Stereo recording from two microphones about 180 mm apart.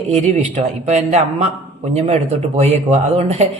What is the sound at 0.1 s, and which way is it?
Speech, 40° right (ahead or behind).